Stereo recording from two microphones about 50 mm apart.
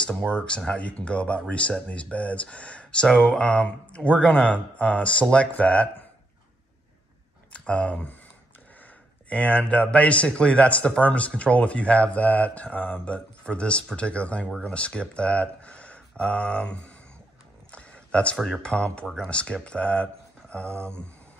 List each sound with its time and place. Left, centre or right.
0.3 s speech: left
7.5 s speech: left
9.3 s speech: left
15.4 s a sound: left
18.6 s speech: left